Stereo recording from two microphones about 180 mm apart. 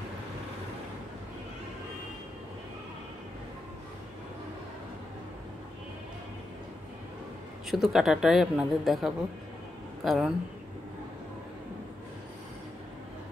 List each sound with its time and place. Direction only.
7.7 s a woman's voice: centre (ahead or behind)